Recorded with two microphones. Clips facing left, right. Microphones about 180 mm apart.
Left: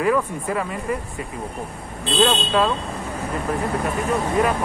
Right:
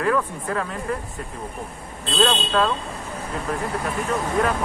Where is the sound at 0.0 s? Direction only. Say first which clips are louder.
Left 2 dB; 10° left (ahead or behind).